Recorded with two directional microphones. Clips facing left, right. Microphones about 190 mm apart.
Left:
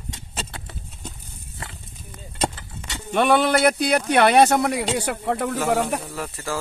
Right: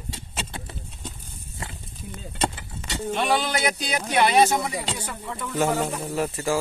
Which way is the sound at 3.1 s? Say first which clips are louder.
Left 7 dB; 55° left (ahead or behind).